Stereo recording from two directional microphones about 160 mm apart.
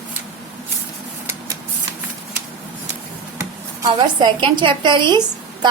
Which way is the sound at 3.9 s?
30° right (ahead or behind).